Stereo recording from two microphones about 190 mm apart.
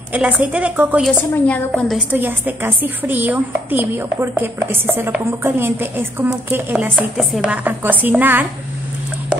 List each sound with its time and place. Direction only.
0.1 s a woman's voice: 10° right (ahead or behind)
1.1 s a woman's voice: 10° left (ahead or behind)
1.7 s a woman's voice: centre (ahead or behind)